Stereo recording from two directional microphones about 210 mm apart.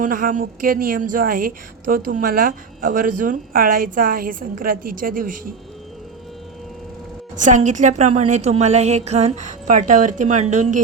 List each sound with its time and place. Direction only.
0.0 s a woman's voice: 40° right (ahead or behind)
7.4 s a woman's voice: 35° right (ahead or behind)